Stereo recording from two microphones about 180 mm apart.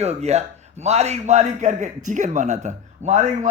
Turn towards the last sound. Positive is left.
turn(degrees=-40)  # may be behind; listen again after turning